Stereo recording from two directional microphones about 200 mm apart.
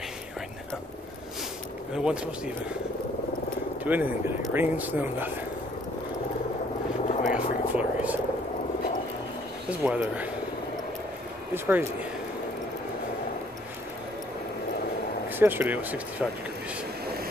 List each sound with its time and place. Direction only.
2.0 s a man's voice: 5° right (ahead or behind)
3.8 s speech: 10° right (ahead or behind)
7.1 s helicopter: 35° left (ahead or behind)
7.3 s vehicle: 5° right (ahead or behind)
9.7 s speech: 5° right (ahead or behind)
11.5 s speech: 10° right (ahead or behind)
15.2 s speech: 10° right (ahead or behind)